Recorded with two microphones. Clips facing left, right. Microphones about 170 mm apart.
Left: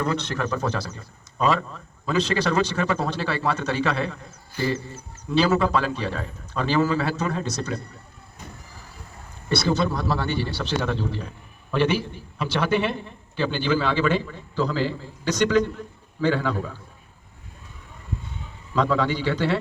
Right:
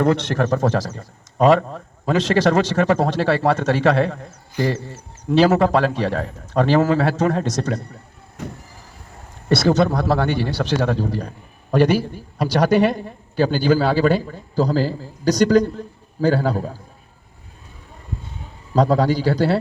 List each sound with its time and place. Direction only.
0.0 s speech: 50° right (ahead or behind)
5.4 s speech: 50° right (ahead or behind)
8.4 s vehicle: 90° right
9.7 s a man's voice: 70° right (ahead or behind); by 16.8 s 40° right (ahead or behind)
18.7 s a man's voice: 40° right (ahead or behind)